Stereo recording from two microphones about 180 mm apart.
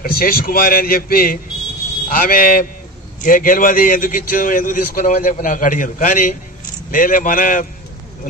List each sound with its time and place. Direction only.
0.0 s a man's voice: 55° left (ahead or behind)